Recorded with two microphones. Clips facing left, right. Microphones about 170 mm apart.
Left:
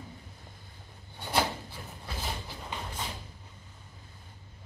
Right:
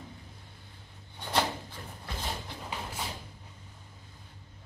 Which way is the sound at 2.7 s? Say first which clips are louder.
Even; 10° right (ahead or behind).